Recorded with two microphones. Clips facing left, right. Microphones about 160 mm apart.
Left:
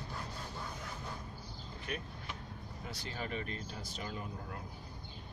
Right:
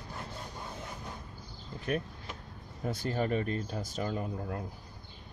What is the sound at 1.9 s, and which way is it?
Speech, 50° right (ahead or behind).